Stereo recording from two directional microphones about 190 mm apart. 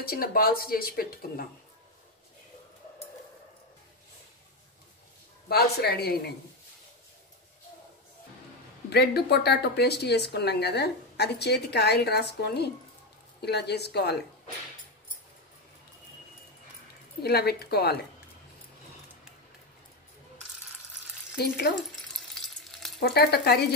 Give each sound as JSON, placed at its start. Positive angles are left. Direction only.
{"t": 0.0, "sound": "speech", "side_deg": 50}
{"t": 5.5, "sound": "speech", "side_deg": 55}
{"t": 8.9, "sound": "speech", "side_deg": 60}
{"t": 17.2, "sound": "speech", "side_deg": 55}
{"t": 21.4, "sound": "speech", "side_deg": 55}
{"t": 22.3, "sound": "frying", "side_deg": 0}
{"t": 22.9, "sound": "speech", "side_deg": 60}